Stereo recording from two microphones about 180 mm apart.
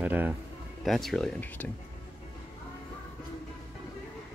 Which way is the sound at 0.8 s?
Centre (ahead or behind).